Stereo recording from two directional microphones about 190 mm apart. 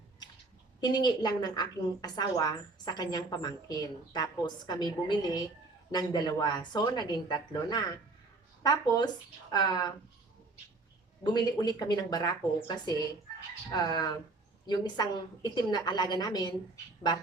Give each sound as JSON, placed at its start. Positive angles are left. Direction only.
{"t": 0.8, "sound": "a woman's voice", "side_deg": 20}
{"t": 11.2, "sound": "a woman's voice", "side_deg": 20}